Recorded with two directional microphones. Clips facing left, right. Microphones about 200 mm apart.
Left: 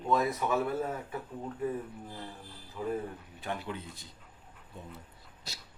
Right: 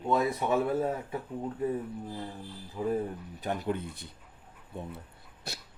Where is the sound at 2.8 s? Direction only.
30° right (ahead or behind).